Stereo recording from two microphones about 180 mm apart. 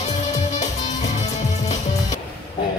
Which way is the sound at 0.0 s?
40° left (ahead or behind).